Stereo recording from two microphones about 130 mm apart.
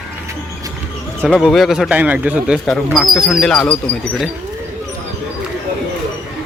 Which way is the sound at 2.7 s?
5° left (ahead or behind).